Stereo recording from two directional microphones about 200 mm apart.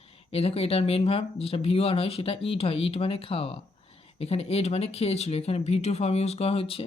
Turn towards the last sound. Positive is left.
turn(degrees=30)  # may be behind; listen again after turning